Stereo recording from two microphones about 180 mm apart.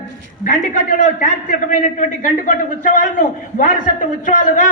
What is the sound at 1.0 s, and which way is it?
A man's voice, 45° left (ahead or behind).